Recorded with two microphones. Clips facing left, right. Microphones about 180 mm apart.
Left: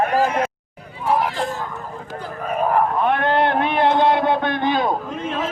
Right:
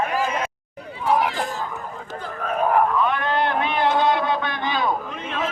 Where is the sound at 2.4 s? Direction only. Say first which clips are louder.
Left 1 dB; 5° left (ahead or behind).